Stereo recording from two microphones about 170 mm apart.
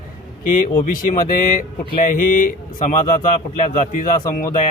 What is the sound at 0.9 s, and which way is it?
Speech, 55° left (ahead or behind).